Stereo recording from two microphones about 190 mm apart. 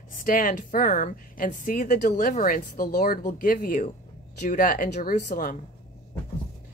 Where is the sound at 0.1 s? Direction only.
45° left (ahead or behind).